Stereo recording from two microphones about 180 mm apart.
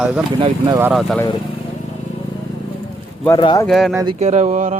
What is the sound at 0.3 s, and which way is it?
Speech, 30° right (ahead or behind).